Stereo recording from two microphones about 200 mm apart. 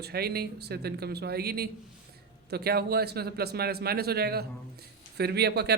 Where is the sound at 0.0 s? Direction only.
50° right (ahead or behind).